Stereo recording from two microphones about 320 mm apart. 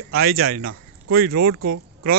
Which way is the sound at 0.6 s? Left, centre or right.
Right.